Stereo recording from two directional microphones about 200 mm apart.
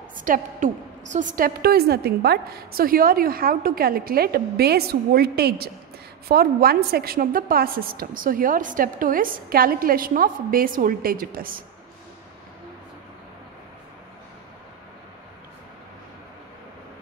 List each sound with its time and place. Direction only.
0.2 s a woman's voice: 40° right (ahead or behind)